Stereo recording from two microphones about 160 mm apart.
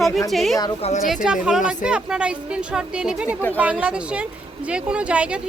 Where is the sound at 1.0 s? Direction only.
5° right (ahead or behind).